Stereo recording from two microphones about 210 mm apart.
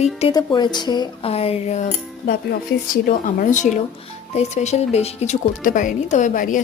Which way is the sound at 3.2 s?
35° left (ahead or behind).